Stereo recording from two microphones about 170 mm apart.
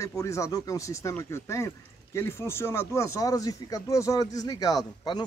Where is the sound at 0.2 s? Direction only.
20° left (ahead or behind).